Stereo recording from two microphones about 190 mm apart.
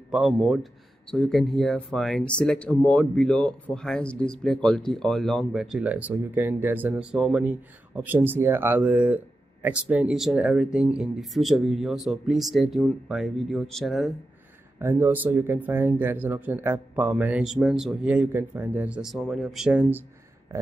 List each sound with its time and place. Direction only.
0.1 s speech: centre (ahead or behind)
14.8 s speech: 10° right (ahead or behind)